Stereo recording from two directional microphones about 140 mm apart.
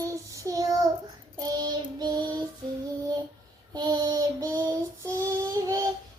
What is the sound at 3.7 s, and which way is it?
Child singing, 30° right (ahead or behind).